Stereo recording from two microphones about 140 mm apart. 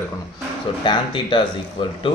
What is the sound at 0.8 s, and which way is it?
Speech, 35° left (ahead or behind).